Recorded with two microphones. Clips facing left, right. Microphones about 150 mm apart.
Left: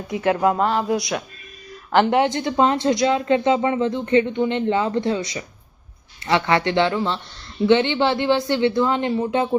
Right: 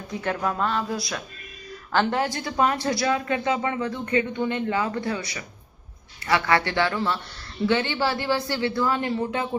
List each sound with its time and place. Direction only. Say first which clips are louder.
0.2 s speech: left 7 dB; 25° left (ahead or behind)